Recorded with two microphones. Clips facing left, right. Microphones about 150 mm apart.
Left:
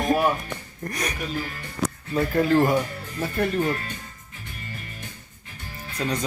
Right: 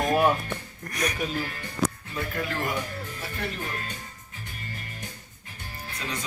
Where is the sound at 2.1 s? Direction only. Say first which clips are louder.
Left 11 dB; 35° left (ahead or behind).